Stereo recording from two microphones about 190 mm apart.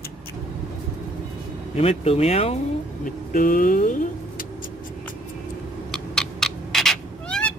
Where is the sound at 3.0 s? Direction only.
45° left (ahead or behind).